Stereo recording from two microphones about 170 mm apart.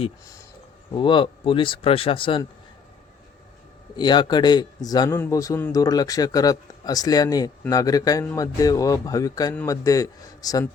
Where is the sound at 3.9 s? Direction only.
25° left (ahead or behind).